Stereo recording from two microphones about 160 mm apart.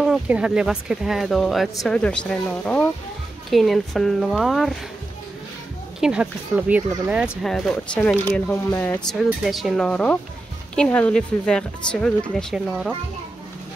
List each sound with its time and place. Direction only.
0.0 s speech: 5° right (ahead or behind)
5.9 s speech: 5° right (ahead or behind); by 8.9 s 10° left (ahead or behind)
9.4 s speech: centre (ahead or behind)